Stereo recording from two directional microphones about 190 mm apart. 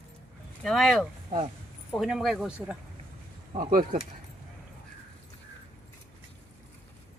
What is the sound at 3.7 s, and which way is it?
Speech, 45° right (ahead or behind).